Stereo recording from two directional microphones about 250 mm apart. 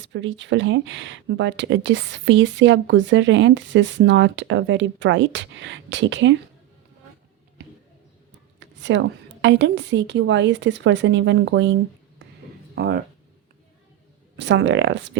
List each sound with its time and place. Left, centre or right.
0.0 s speech: right
8.5 s speech: right
14.3 s speech: right